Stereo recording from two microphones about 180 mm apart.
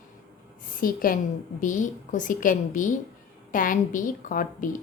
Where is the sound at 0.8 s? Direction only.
50° left (ahead or behind).